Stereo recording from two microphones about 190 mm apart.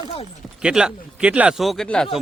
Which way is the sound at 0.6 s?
5° right (ahead or behind).